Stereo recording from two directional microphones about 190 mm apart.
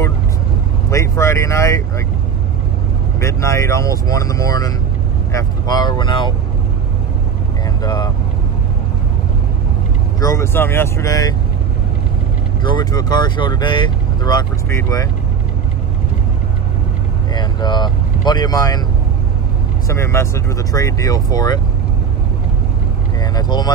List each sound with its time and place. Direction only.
0.8 s vehicle: 15° left (ahead or behind)
3.2 s speech: 15° left (ahead or behind)
7.8 s speech: 20° left (ahead or behind)
10.2 s speech: 15° left (ahead or behind)
12.7 s speech: 20° left (ahead or behind)
17.3 s speech: 20° left (ahead or behind)
19.9 s speech: 15° left (ahead or behind)
23.3 s speech: 20° left (ahead or behind)